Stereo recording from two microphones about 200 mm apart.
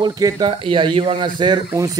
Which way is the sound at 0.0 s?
20° right (ahead or behind).